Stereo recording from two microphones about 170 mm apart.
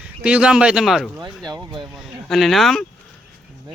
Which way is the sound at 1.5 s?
30° right (ahead or behind).